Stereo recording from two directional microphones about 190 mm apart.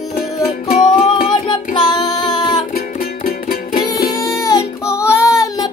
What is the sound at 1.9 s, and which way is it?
Music, 20° left (ahead or behind).